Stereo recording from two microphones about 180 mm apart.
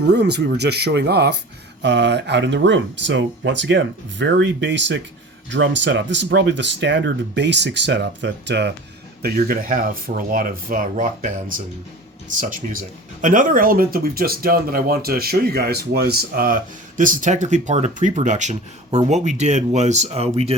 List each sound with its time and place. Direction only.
0.1 s speech: 70° right (ahead or behind)
1.8 s speech: 75° right (ahead or behind)
9.2 s speech: 55° right (ahead or behind); by 20.6 s 35° right (ahead or behind)